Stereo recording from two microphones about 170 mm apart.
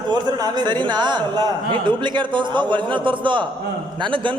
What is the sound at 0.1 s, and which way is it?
Speech, 25° right (ahead or behind).